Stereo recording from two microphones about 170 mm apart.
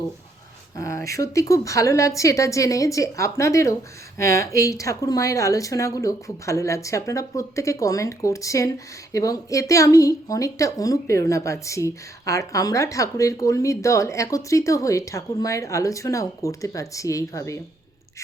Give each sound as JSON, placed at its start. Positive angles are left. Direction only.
{"t": 0.8, "sound": "speech", "side_deg": 15}